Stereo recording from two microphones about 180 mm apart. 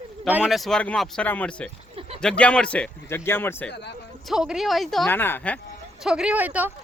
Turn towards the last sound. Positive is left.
turn(degrees=-10)  # may be behind; listen again after turning